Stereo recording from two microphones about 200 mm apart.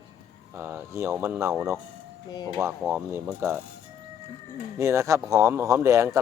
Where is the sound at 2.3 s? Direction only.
20° left (ahead or behind).